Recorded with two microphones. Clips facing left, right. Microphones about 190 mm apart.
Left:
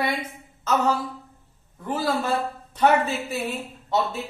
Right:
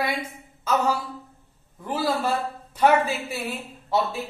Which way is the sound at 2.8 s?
10° right (ahead or behind).